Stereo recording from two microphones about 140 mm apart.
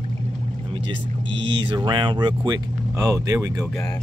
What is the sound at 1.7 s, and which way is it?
Speech, 35° right (ahead or behind).